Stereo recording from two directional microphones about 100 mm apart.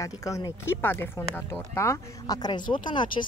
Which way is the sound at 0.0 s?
35° left (ahead or behind).